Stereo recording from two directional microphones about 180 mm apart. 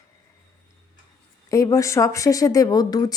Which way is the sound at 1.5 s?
20° left (ahead or behind).